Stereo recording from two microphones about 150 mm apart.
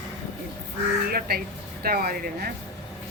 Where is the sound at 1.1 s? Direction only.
85° right.